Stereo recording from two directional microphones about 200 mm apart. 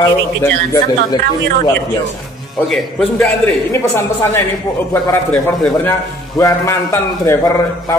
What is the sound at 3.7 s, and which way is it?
A man's voice, 15° left (ahead or behind).